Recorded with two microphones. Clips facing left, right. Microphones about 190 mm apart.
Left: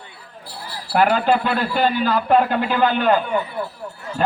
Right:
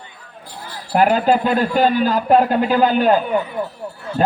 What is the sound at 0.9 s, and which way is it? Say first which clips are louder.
A man's voice: right 2 dB; 40° right (ahead or behind).